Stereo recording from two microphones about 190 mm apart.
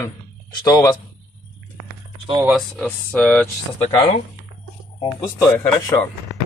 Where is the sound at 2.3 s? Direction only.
Centre (ahead or behind).